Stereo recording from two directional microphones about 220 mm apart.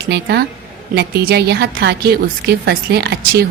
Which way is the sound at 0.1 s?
50° right (ahead or behind).